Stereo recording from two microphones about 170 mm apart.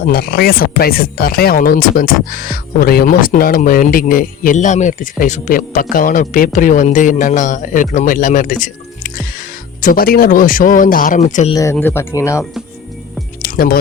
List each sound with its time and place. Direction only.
0.0 s speech: 60° left (ahead or behind)
8.6 s music: 55° left (ahead or behind)
9.8 s speech: 60° left (ahead or behind)
11.5 s speech: 15° left (ahead or behind)
13.4 s music: 60° left (ahead or behind)